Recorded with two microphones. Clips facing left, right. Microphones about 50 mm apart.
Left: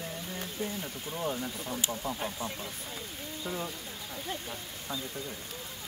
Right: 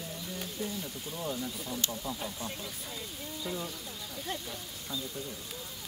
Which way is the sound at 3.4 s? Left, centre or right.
Centre.